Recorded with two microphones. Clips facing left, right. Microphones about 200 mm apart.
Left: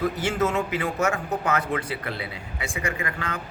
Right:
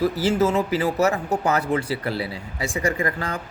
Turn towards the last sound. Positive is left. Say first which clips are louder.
# right 5 dB
turn(degrees=-35)  # may be behind; listen again after turning